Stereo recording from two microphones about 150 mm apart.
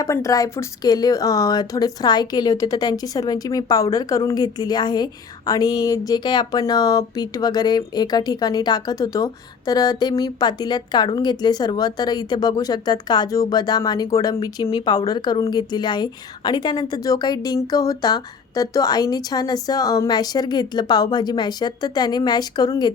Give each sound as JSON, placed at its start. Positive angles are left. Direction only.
{"t": 0.0, "sound": "speech", "side_deg": 20}